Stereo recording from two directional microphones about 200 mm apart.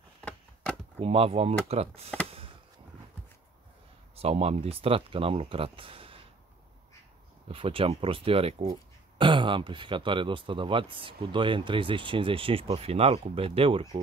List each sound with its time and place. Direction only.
0.9 s speech: 30° right (ahead or behind)
4.1 s speech: 30° right (ahead or behind)
7.4 s speech: 25° right (ahead or behind)